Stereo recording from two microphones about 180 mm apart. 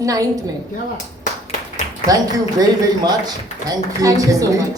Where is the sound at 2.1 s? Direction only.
20° right (ahead or behind).